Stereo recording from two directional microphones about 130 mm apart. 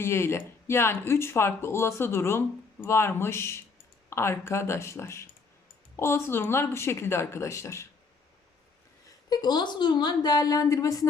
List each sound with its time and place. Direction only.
0.0 s speech: 20° left (ahead or behind)
9.3 s a woman's voice: 30° left (ahead or behind)